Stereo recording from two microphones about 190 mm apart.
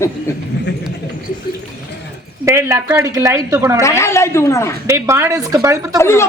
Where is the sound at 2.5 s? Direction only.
15° right (ahead or behind).